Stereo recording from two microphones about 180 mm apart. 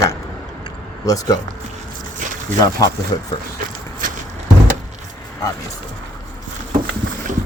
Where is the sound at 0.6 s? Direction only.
20° left (ahead or behind).